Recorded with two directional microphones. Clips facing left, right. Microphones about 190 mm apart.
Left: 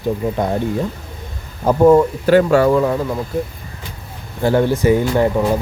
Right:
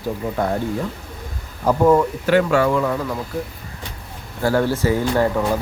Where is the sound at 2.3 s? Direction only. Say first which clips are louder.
Left 4 dB; 40° left (ahead or behind).